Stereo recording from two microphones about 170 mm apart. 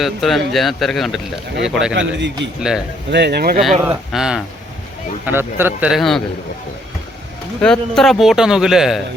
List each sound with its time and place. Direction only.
0.0 s speech: centre (ahead or behind)
2.0 s a man's voice: 90° right
2.6 s speech: 5° right (ahead or behind)
3.1 s speech: 85° right; by 3.6 s 65° right (ahead or behind)
3.8 s a man's voice: 5° right (ahead or behind)
7.6 s speech: 5° left (ahead or behind)